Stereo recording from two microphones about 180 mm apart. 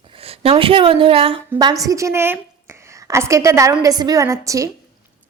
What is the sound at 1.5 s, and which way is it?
A woman's voice, 20° right (ahead or behind).